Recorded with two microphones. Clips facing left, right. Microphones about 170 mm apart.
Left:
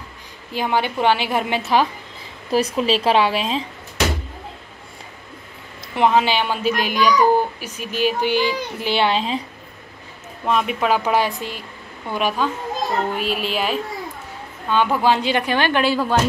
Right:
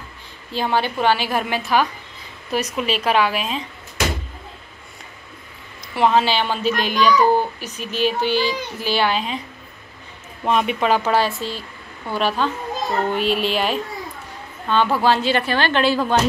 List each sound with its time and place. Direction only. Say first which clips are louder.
0.5 s a woman's voice: even; 15° left (ahead or behind); by 3.6 s 30° left (ahead or behind)
5.9 s a child's voice: even; 15° left (ahead or behind)
10.4 s a child's voice: right 1 dB; centre (ahead or behind)